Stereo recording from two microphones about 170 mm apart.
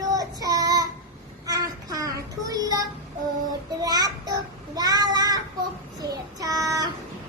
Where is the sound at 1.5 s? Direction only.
20° right (ahead or behind).